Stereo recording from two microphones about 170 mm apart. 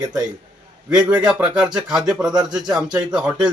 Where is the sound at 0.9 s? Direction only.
5° right (ahead or behind).